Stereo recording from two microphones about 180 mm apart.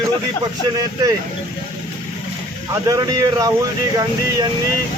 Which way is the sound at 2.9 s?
20° right (ahead or behind).